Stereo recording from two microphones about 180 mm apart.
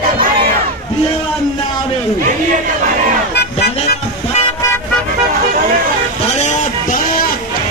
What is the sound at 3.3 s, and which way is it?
Music, 65° left (ahead or behind).